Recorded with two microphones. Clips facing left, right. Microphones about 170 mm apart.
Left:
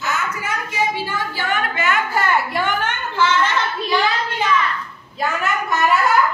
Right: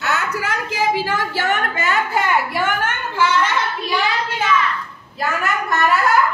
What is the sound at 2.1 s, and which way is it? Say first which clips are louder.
A woman's voice: even; 10° right (ahead or behind).